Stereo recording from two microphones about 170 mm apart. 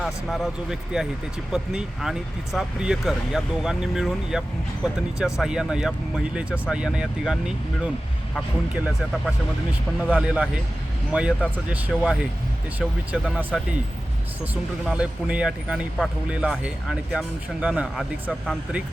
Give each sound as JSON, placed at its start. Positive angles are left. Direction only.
{"t": 0.0, "sound": "speech", "side_deg": 0}
{"t": 8.7, "sound": "speech", "side_deg": -10}
{"t": 10.1, "sound": "speech", "side_deg": -5}
{"t": 14.8, "sound": "speech", "side_deg": -5}